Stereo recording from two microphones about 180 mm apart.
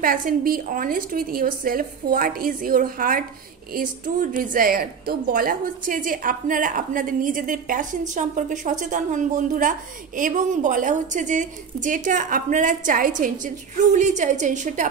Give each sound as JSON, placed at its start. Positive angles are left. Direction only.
{"t": 0.0, "sound": "a woman's voice", "side_deg": -50}